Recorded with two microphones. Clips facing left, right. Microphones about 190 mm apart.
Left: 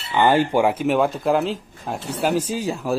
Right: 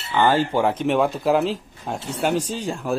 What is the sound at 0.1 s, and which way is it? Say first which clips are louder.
Speech: left 2 dB; 15° left (ahead or behind).